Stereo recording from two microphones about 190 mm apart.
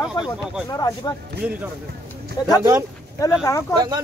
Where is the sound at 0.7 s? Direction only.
20° left (ahead or behind).